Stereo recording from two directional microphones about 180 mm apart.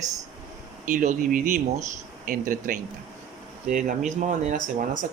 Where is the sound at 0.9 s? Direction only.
45° right (ahead or behind).